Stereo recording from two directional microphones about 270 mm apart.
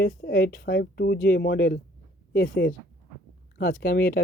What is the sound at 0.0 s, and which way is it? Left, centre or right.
Speech, left.